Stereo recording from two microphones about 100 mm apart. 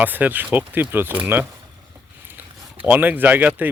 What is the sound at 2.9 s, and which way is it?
Speech, 20° right (ahead or behind).